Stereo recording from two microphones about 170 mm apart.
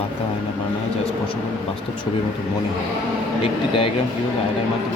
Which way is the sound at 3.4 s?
35° left (ahead or behind).